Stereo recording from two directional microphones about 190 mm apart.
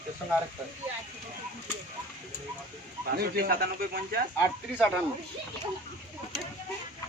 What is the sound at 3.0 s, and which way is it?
Speech, 55° right (ahead or behind).